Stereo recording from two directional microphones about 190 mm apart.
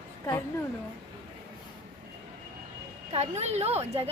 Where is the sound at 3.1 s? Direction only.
35° right (ahead or behind).